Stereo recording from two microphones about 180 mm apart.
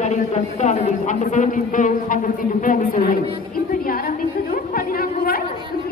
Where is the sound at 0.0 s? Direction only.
40° left (ahead or behind); by 5.4 s 55° left (ahead or behind).